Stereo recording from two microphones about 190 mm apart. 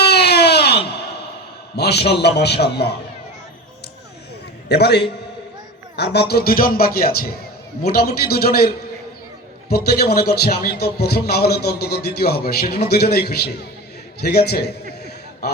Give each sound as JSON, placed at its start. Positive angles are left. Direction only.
{"t": 0.0, "sound": "a sound", "side_deg": 60}
{"t": 1.7, "sound": "a man's voice", "side_deg": 60}
{"t": 4.7, "sound": "a man's voice", "side_deg": 60}